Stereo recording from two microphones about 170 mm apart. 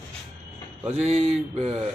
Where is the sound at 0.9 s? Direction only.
40° right (ahead or behind).